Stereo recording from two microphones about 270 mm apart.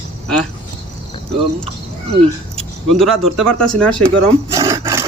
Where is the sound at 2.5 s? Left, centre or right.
Centre.